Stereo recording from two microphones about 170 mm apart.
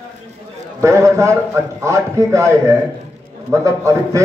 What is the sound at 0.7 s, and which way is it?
A man's voice, 15° right (ahead or behind).